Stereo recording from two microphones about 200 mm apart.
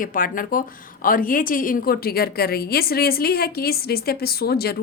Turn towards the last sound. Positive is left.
turn(degrees=50)  # may be behind; listen again after turning